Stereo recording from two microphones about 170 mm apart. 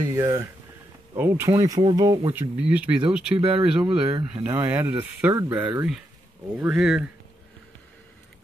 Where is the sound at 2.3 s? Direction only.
10° right (ahead or behind).